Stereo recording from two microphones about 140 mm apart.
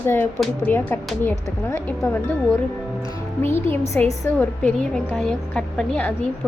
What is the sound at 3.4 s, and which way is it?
Speech, 15° left (ahead or behind).